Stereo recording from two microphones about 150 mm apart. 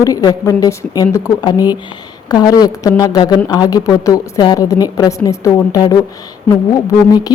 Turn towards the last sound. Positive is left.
turn(degrees=25)  # may be behind; listen again after turning